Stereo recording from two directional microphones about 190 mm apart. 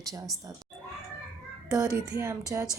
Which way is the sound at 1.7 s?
15° right (ahead or behind).